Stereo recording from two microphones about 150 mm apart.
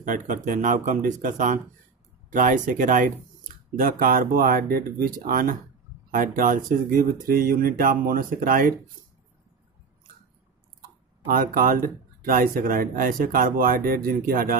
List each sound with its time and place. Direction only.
0.0 s speech: 60° right (ahead or behind)
11.2 s speech: 65° right (ahead or behind)